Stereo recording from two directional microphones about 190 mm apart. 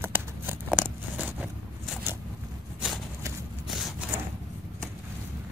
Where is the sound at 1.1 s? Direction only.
10° right (ahead or behind).